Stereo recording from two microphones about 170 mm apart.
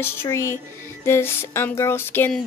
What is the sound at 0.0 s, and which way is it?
Speech, 15° left (ahead or behind).